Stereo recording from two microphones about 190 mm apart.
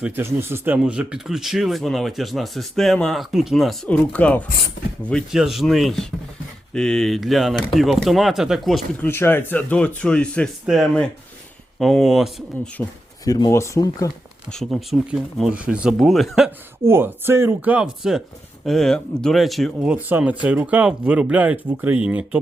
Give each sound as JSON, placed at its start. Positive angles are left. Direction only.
{"t": 0.0, "sound": "speech", "side_deg": -10}
{"t": 9.0, "sound": "speech", "side_deg": 10}
{"t": 12.8, "sound": "speech", "side_deg": 10}
{"t": 14.5, "sound": "speech", "side_deg": 0}
{"t": 16.8, "sound": "speech", "side_deg": -10}